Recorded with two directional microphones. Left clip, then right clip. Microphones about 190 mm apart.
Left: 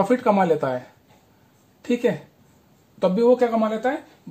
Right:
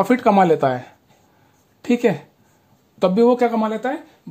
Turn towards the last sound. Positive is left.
turn(degrees=-45)  # may be behind; listen again after turning